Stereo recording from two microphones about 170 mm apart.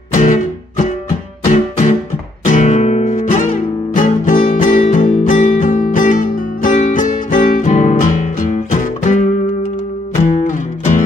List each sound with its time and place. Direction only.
0.1 s music: 45° left (ahead or behind)
10.2 s music: 50° left (ahead or behind)